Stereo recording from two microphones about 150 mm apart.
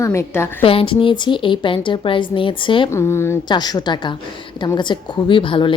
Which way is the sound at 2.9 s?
15° left (ahead or behind).